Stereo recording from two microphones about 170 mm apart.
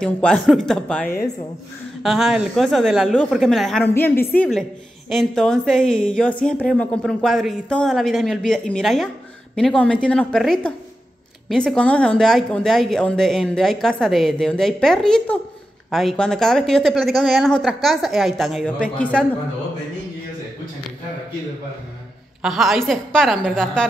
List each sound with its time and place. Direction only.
0.0 s speech: 5° left (ahead or behind)
4.4 s speech: centre (ahead or behind)
22.4 s speech: centre (ahead or behind)